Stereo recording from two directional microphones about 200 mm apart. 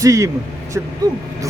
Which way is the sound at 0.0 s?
15° right (ahead or behind).